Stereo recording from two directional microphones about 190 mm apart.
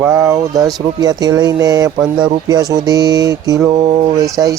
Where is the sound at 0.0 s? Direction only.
15° right (ahead or behind).